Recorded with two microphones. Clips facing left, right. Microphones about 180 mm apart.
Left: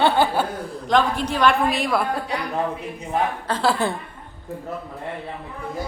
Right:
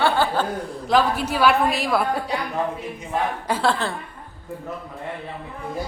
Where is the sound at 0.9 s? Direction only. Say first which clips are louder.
Even; 5° right (ahead or behind).